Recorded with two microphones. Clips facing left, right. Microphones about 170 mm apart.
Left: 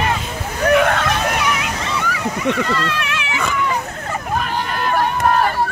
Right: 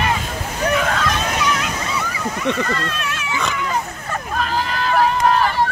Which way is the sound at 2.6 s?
75° left (ahead or behind).